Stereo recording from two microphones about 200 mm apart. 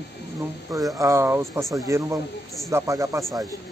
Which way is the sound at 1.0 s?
15° right (ahead or behind).